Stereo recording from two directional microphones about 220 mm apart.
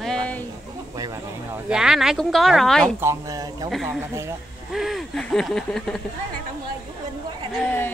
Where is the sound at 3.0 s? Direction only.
15° right (ahead or behind).